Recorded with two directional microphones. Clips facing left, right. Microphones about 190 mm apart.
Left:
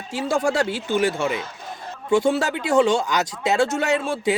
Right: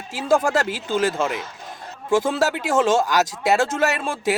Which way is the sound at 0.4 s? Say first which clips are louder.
Left 1 dB; 90° right.